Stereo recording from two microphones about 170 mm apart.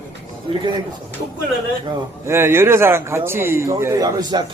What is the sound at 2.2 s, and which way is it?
A man's voice, 15° right (ahead or behind).